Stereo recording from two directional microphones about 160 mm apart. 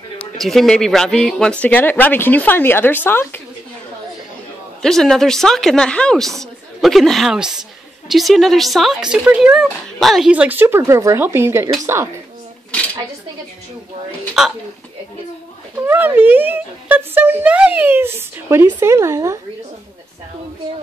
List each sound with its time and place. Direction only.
0.4 s speech: centre (ahead or behind)
4.8 s speech: 5° left (ahead or behind); by 11.7 s 15° right (ahead or behind)
14.4 s speech: 5° right (ahead or behind)
15.8 s speech: 15° right (ahead or behind)